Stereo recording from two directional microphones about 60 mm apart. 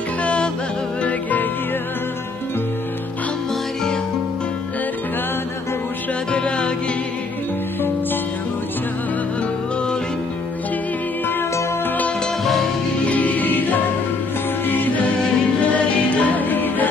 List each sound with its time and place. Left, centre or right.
0.2 s music: left
6.3 s music: centre
13.0 s music: left